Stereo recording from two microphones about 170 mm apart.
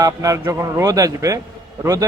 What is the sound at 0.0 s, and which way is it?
A man's voice, 20° right (ahead or behind).